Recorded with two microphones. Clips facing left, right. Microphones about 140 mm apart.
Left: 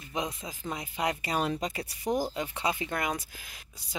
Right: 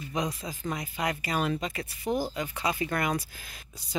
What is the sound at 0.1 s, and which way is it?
Speech, 25° left (ahead or behind).